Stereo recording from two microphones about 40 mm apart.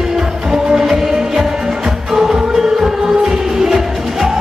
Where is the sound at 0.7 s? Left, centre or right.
Centre.